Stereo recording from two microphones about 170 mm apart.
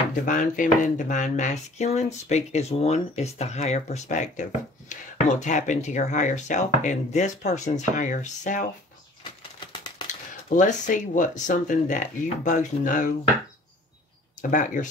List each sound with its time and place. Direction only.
0.1 s speech: 50° left (ahead or behind)
10.5 s speech: 50° left (ahead or behind)
14.4 s speech: 50° left (ahead or behind)